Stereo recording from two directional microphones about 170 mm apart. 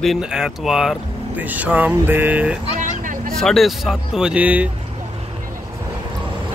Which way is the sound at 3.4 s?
Centre (ahead or behind).